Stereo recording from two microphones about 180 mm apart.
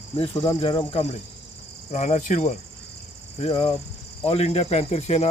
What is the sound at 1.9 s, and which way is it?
Cricket, 45° left (ahead or behind).